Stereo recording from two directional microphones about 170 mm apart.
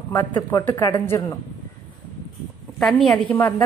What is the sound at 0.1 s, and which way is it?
Speech, 15° left (ahead or behind).